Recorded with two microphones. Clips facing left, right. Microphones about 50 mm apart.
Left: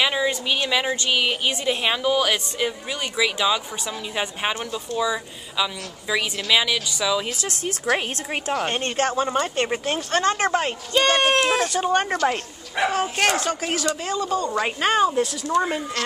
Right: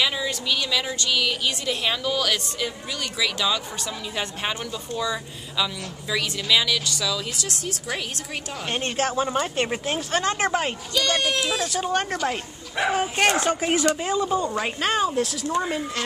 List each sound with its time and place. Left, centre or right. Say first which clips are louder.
0.0 s a woman's voice: left 3 dB; left
8.7 s speech: left 2 dB; centre
10.9 s speech: left 6 dB; left
11.7 s speech: left 3 dB; centre
12.9 s speech: right 2 dB; centre
13.3 s speech: right 2 dB; right
14.6 s speech: left 3 dB; centre